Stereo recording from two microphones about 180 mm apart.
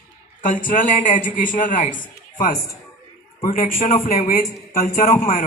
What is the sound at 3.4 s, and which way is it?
A woman's voice, 50° left (ahead or behind).